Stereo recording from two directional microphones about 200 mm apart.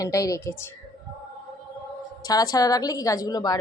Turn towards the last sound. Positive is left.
turn(degrees=20)  # may be behind; listen again after turning